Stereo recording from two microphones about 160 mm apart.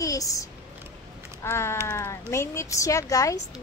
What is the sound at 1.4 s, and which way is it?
Speech, 15° left (ahead or behind).